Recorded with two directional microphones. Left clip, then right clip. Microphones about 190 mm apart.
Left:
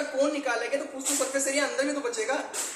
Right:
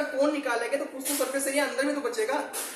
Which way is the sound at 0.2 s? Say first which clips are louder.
Even; 5° right (ahead or behind).